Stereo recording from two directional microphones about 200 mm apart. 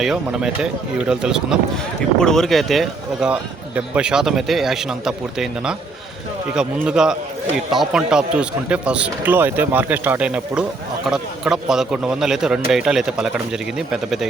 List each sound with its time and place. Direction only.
0.0 s speech: 5° right (ahead or behind)